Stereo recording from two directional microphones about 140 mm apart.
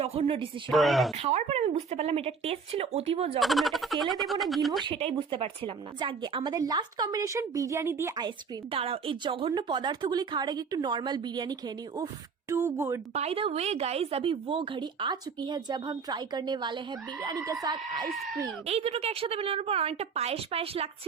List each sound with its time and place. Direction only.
0.0 s speech: 45° right (ahead or behind)
0.7 s speech: centre (ahead or behind)
1.2 s a woman's voice: 50° right (ahead or behind)
3.4 s speech: centre (ahead or behind)
4.8 s a woman's voice: 40° right (ahead or behind); by 8.1 s 20° right (ahead or behind)
8.7 s a woman's voice: 40° right (ahead or behind)
12.5 s a woman's voice: 20° right (ahead or behind)
13.1 s a woman's voice: 45° right (ahead or behind); by 18.0 s 30° right (ahead or behind)
18.6 s a woman's voice: 45° right (ahead or behind)